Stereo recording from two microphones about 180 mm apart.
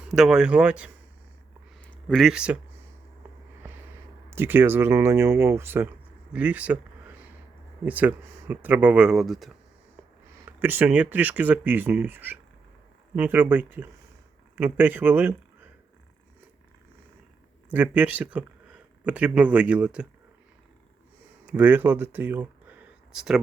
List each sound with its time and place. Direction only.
0.1 s speech: 5° right (ahead or behind)
1.8 s speech: 5° left (ahead or behind)
4.3 s speech: 10° right (ahead or behind)
7.9 s speech: 10° right (ahead or behind)
10.6 s speech: 10° right (ahead or behind)
17.7 s speech: 10° right (ahead or behind)
21.4 s speech: 10° right (ahead or behind)